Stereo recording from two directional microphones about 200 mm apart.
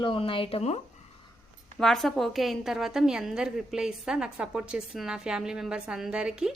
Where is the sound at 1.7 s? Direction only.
Centre (ahead or behind).